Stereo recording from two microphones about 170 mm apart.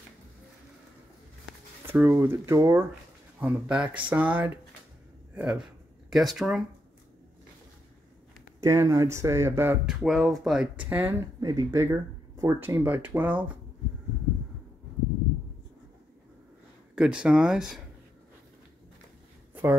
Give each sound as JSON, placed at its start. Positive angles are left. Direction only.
{"t": 1.9, "sound": "speech", "side_deg": -15}
{"t": 8.5, "sound": "speech", "side_deg": -20}
{"t": 9.8, "sound": "speech", "side_deg": 0}
{"t": 16.9, "sound": "speech", "side_deg": -5}